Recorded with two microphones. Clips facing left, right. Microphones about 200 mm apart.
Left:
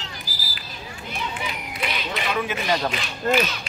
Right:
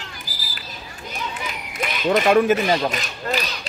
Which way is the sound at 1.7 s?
45° right (ahead or behind).